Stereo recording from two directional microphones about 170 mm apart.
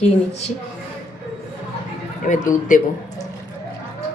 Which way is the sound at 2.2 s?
50° left (ahead or behind).